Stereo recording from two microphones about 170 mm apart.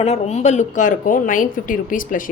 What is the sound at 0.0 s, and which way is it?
A woman's voice, 40° left (ahead or behind).